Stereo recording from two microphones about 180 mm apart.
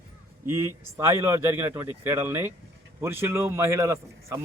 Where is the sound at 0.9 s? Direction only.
15° right (ahead or behind).